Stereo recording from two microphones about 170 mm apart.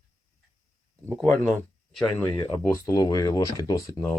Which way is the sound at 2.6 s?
15° left (ahead or behind).